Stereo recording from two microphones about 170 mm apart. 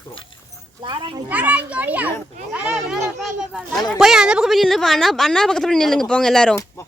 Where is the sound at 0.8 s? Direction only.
30° right (ahead or behind).